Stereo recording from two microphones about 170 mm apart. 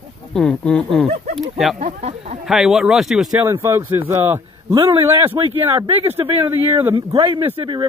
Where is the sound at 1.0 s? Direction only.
40° right (ahead or behind).